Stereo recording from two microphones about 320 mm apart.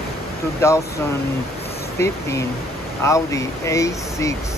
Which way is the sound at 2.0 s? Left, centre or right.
Centre.